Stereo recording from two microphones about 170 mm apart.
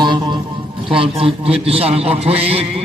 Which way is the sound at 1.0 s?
35° right (ahead or behind).